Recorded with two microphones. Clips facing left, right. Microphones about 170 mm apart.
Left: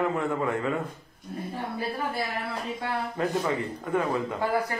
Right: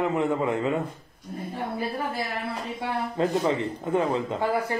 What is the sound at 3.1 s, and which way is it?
Speech, 25° right (ahead or behind).